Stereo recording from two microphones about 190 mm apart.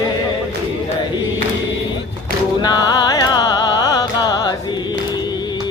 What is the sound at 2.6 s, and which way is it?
Music, 20° left (ahead or behind).